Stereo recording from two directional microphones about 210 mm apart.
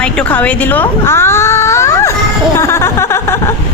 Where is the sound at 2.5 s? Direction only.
15° left (ahead or behind).